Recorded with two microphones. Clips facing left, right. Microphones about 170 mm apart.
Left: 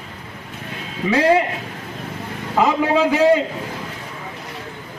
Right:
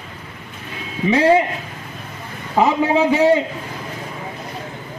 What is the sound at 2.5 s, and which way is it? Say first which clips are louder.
Speech: right 1 dB; 15° right (ahead or behind).